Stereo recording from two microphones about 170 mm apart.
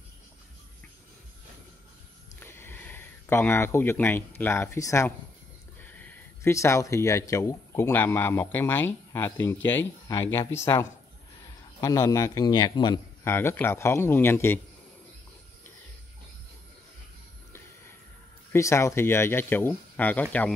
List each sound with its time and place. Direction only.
2.4 s a man's voice: 15° left (ahead or behind)
13.2 s speech: 15° left (ahead or behind)
18.5 s speech: 15° left (ahead or behind)